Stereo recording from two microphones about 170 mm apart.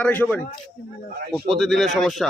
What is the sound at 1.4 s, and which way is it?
Speech, centre (ahead or behind).